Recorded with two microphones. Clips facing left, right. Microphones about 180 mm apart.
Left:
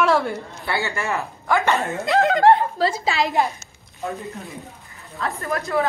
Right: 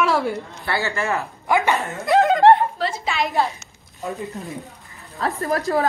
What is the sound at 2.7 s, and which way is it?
Speech, 35° left (ahead or behind).